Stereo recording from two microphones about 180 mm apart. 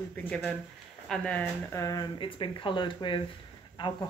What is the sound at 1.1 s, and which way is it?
Speech, 5° left (ahead or behind).